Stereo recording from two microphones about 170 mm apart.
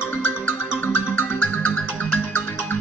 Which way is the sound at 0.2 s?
10° left (ahead or behind).